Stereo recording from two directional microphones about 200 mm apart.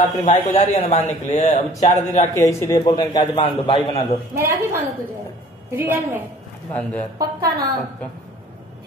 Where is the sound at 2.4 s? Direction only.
15° left (ahead or behind).